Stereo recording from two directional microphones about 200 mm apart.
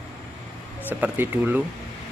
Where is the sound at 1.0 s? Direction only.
10° right (ahead or behind).